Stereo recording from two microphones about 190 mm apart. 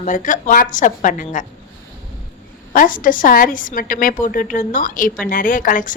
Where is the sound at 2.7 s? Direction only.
45° left (ahead or behind).